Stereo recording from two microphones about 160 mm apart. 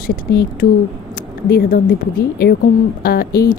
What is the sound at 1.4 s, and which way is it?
Speech, 75° left (ahead or behind).